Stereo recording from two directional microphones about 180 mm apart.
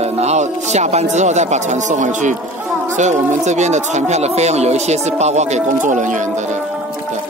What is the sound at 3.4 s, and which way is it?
Speech, 40° right (ahead or behind).